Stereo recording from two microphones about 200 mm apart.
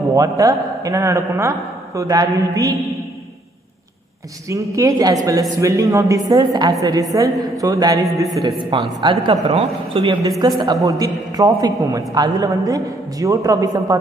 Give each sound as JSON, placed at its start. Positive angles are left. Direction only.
{"t": 0.1, "sound": "a woman's voice", "side_deg": -15}
{"t": 4.5, "sound": "a woman's voice", "side_deg": -15}
{"t": 10.6, "sound": "a woman's voice", "side_deg": -15}